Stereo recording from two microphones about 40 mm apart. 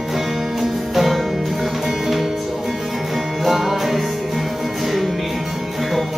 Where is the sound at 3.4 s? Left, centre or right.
Centre.